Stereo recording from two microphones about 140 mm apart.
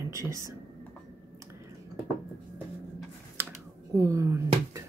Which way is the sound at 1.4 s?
20° right (ahead or behind).